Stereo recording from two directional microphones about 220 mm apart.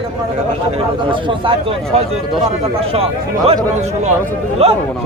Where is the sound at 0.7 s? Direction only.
25° right (ahead or behind).